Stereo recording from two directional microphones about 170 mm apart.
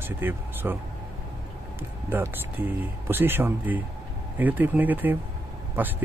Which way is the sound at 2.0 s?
10° right (ahead or behind).